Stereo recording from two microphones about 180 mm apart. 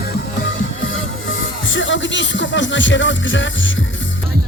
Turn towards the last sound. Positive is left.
turn(degrees=90)